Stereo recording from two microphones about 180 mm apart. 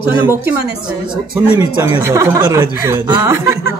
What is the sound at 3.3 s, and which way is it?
Speech, 15° right (ahead or behind).